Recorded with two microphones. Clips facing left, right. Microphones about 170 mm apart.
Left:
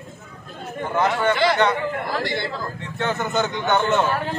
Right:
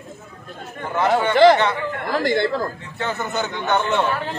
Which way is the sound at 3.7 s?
Centre (ahead or behind).